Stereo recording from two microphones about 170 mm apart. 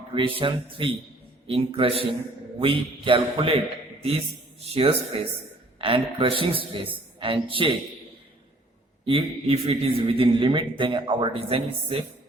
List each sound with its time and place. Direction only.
0.1 s a man's voice: 30° right (ahead or behind)
4.6 s a man's voice: 35° right (ahead or behind)
9.0 s a man's voice: 30° right (ahead or behind)